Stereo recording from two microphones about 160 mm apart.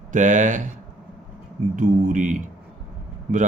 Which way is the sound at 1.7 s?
55° right (ahead or behind).